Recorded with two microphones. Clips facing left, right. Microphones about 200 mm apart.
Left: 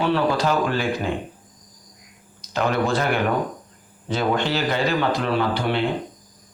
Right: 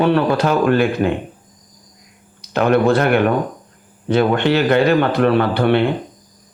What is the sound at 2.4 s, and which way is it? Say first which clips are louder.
A man's voice: right 7 dB; 60° right (ahead or behind).